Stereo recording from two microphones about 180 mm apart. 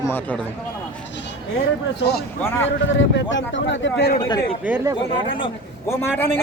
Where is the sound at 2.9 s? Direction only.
90° left.